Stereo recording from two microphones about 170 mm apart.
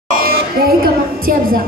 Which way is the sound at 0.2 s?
60° right (ahead or behind).